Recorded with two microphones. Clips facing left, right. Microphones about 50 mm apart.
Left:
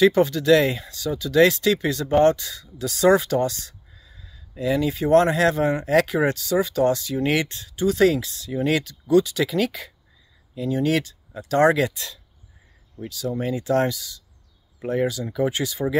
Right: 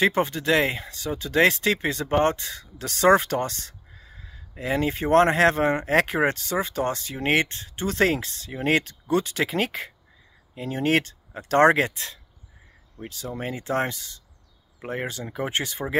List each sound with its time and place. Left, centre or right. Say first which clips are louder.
0.0 s speech: left 5 dB; right